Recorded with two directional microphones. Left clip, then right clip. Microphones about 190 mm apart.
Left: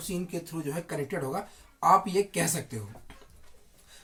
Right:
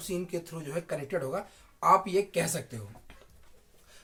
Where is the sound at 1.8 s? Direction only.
15° right (ahead or behind).